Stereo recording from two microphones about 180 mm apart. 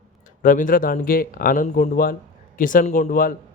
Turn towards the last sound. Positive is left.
turn(degrees=50)  # may be behind; listen again after turning